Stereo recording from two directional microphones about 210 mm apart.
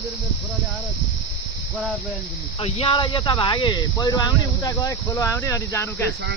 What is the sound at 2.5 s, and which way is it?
Speech, 30° left (ahead or behind).